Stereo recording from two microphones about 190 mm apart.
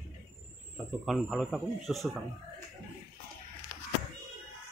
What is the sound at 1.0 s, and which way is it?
Speech, centre (ahead or behind).